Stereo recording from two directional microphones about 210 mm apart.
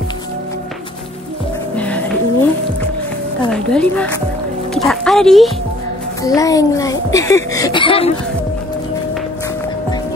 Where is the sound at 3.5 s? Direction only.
5° left (ahead or behind).